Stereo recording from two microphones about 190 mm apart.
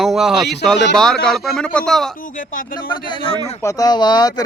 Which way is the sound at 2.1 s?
45° left (ahead or behind).